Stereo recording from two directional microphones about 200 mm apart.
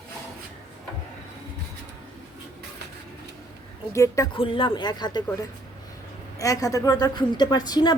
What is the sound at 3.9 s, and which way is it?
A woman's voice, 15° left (ahead or behind).